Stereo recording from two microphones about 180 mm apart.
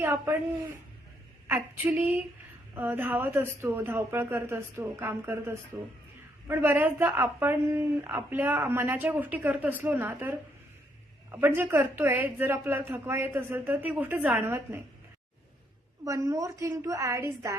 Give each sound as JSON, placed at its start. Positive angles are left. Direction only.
{"t": 0.0, "sound": "a woman's voice", "side_deg": -15}
{"t": 1.5, "sound": "a woman's voice", "side_deg": -10}
{"t": 16.0, "sound": "a woman's voice", "side_deg": -20}